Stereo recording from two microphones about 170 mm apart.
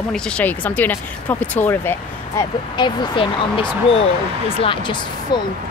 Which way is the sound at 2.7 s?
25° left (ahead or behind).